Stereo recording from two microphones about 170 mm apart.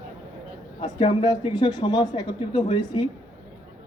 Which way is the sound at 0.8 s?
30° left (ahead or behind).